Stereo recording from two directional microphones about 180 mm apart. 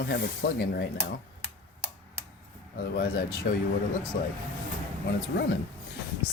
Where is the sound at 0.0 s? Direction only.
65° left (ahead or behind).